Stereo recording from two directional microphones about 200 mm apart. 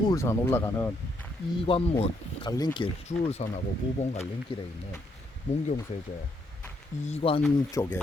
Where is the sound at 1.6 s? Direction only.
30° left (ahead or behind).